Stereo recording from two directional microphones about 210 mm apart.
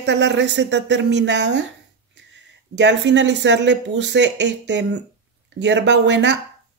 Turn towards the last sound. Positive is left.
turn(degrees=-55)  # may be behind; listen again after turning